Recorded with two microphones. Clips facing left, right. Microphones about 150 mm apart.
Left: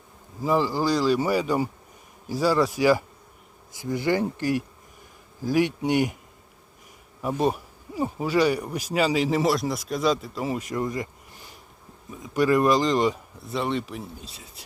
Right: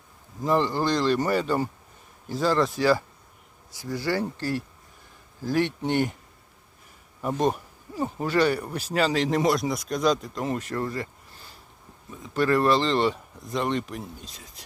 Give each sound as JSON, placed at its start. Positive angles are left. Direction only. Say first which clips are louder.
{"t": 0.4, "sound": "speech", "louder": "left 1 dB", "side_deg": 5}
{"t": 7.2, "sound": "speech", "louder": "even", "side_deg": 5}